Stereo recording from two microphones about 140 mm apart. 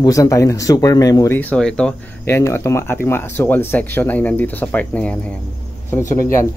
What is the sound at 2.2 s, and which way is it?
Speech, 20° left (ahead or behind).